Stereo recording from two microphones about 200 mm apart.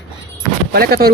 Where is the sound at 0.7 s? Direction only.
50° right (ahead or behind).